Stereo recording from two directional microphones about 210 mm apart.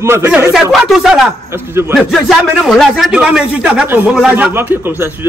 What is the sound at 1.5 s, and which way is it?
Speech, 10° right (ahead or behind).